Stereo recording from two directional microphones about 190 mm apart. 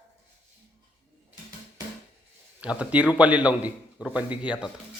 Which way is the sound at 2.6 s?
5° right (ahead or behind).